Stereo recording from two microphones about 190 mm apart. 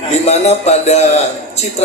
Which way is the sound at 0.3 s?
35° left (ahead or behind).